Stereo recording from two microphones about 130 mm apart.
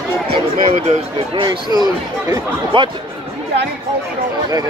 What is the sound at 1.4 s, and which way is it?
Speech, 35° right (ahead or behind).